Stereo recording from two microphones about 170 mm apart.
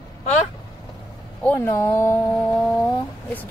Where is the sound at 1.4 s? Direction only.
10° left (ahead or behind).